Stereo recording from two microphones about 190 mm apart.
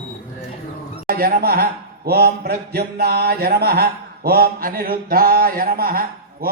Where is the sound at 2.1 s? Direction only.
55° right (ahead or behind).